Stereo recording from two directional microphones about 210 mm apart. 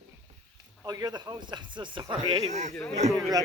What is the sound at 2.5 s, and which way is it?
Speech, 35° right (ahead or behind).